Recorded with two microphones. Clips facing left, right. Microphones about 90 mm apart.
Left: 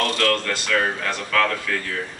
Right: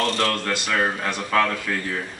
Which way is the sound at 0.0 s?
20° right (ahead or behind).